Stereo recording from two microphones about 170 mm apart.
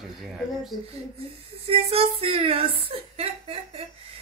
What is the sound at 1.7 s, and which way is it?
A woman's voice, 35° right (ahead or behind).